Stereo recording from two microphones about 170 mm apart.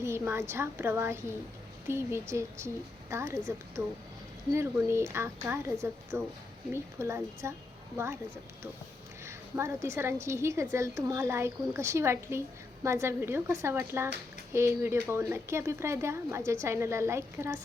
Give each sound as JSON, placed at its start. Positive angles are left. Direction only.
{"t": 0.0, "sound": "a woman's voice", "side_deg": -15}
{"t": 9.2, "sound": "a woman's voice", "side_deg": -15}